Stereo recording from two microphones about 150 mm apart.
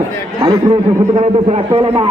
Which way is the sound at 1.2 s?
40° right (ahead or behind).